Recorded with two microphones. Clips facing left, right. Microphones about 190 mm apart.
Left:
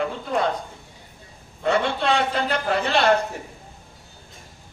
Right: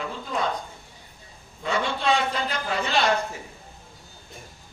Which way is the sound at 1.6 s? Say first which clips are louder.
Left 3 dB; 60° left (ahead or behind).